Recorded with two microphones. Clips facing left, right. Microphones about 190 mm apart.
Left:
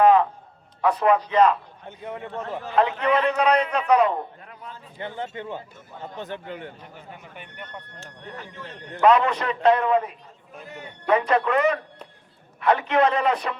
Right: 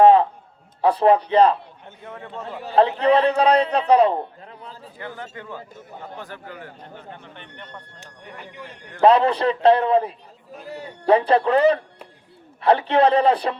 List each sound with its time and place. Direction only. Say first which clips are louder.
0.0 s a man's voice: right 4 dB; 30° right (ahead or behind)
1.9 s a man's voice: left 4 dB; 20° left (ahead or behind)
2.6 s a man's voice: right 5 dB; 30° right (ahead or behind)
4.9 s a man's voice: left 4 dB; 20° left (ahead or behind)
7.1 s a man's voice: right 2 dB; 10° left (ahead or behind)
7.9 s speech: left 2 dB; 15° right (ahead or behind)
9.0 s a man's voice: right 3 dB; 30° right (ahead or behind)